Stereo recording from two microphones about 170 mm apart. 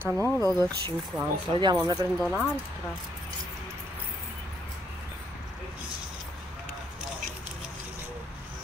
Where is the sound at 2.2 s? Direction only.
Centre (ahead or behind).